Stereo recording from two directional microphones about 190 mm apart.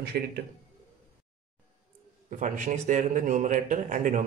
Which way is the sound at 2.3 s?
40° right (ahead or behind).